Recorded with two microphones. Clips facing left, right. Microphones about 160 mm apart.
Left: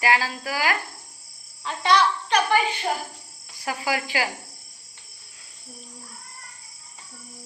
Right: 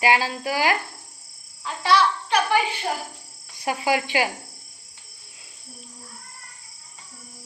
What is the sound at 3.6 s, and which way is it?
Speech, 25° right (ahead or behind).